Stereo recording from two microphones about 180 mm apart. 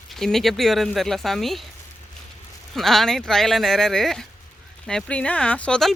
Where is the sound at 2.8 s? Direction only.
Centre (ahead or behind).